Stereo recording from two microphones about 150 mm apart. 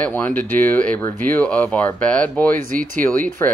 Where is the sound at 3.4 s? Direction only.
15° left (ahead or behind).